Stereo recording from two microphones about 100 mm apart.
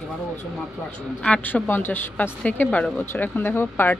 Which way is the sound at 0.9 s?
15° left (ahead or behind).